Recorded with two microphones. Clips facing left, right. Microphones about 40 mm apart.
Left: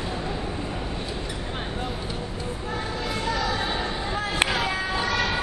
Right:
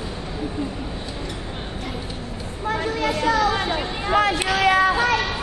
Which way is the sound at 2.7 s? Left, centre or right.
Right.